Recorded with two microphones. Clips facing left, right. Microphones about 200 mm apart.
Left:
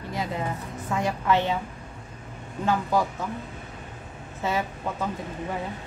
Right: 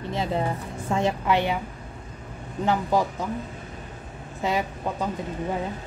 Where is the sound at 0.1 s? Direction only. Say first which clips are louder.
Right 3 dB; 25° right (ahead or behind).